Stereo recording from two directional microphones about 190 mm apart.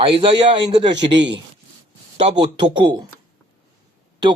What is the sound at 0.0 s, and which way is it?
Speech, 30° right (ahead or behind).